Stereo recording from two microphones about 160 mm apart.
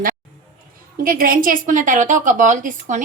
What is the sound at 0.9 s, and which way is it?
A woman's voice, 60° right (ahead or behind).